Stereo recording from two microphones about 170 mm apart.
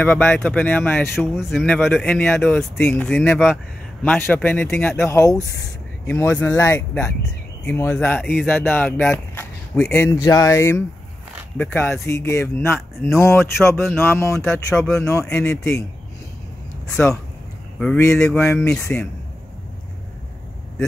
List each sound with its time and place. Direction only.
0.0 s speech: 10° left (ahead or behind)
1.1 s speech: centre (ahead or behind); by 15.8 s 15° left (ahead or behind)
16.8 s speech: 5° left (ahead or behind)